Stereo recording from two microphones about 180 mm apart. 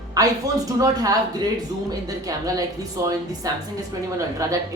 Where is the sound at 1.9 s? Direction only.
20° right (ahead or behind).